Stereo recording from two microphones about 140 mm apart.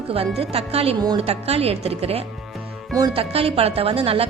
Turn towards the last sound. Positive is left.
turn(degrees=-45)  # may be behind; listen again after turning